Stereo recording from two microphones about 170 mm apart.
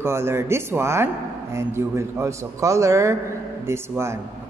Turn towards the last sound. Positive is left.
turn(degrees=-15)  # may be behind; listen again after turning